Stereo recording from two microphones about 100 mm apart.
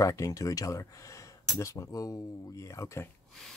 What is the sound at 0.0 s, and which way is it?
Speech, 35° left (ahead or behind).